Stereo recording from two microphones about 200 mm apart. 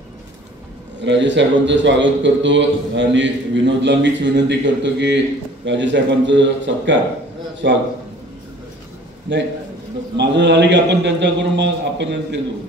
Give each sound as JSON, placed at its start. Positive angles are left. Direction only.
{"t": 1.0, "sound": "a man's voice", "side_deg": -65}
{"t": 9.3, "sound": "a man's voice", "side_deg": -65}